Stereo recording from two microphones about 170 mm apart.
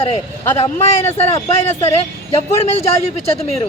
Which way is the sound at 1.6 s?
40° left (ahead or behind).